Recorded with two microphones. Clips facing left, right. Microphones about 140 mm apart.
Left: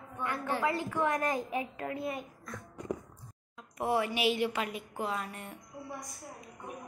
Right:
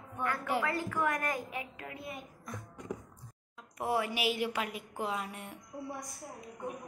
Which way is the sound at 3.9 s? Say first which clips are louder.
Left 3 dB; 5° right (ahead or behind).